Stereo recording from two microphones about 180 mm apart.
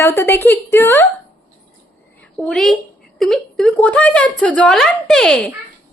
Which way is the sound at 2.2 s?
5° left (ahead or behind).